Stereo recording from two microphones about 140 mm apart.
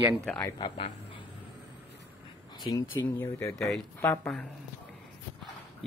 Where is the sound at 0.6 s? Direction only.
30° left (ahead or behind).